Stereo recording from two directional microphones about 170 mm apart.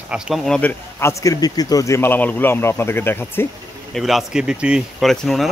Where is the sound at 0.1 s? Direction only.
Centre (ahead or behind).